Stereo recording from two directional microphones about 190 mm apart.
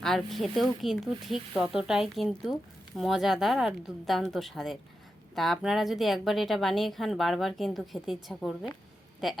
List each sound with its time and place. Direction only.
0.0 s a woman's voice: centre (ahead or behind)